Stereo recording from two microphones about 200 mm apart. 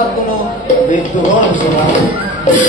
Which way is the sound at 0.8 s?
40° left (ahead or behind).